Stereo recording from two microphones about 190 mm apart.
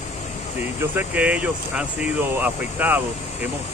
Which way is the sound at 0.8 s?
10° right (ahead or behind).